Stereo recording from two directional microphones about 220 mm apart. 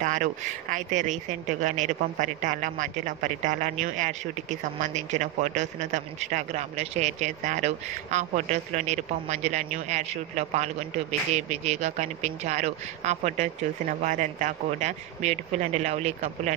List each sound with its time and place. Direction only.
0.0 s speech: 35° right (ahead or behind)